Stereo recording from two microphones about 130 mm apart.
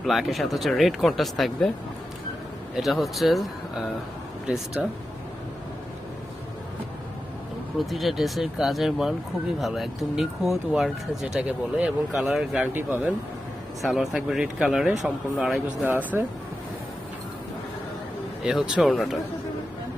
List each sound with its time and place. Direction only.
0.0 s speech: centre (ahead or behind)
2.7 s speech: centre (ahead or behind)
7.8 s speech: centre (ahead or behind)
12.7 s speech: 15° right (ahead or behind)
13.8 s speech: centre (ahead or behind)
18.4 s speech: 5° right (ahead or behind)